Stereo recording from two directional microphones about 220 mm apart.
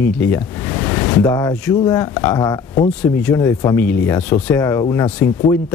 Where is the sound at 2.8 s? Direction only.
5° left (ahead or behind).